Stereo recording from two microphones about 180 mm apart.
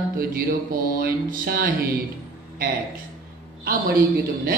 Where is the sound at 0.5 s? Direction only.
55° right (ahead or behind).